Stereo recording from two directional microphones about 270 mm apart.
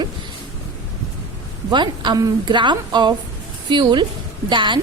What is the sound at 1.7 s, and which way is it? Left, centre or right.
Speech, centre.